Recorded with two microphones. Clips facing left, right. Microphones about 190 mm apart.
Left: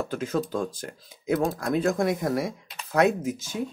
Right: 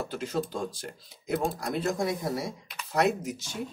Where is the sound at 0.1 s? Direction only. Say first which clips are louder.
Left 4 dB; 45° left (ahead or behind).